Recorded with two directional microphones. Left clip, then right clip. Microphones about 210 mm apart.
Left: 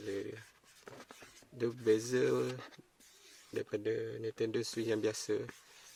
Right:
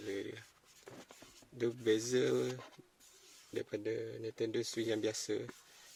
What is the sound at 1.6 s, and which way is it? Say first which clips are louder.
Speech: left 2 dB; 20° left (ahead or behind).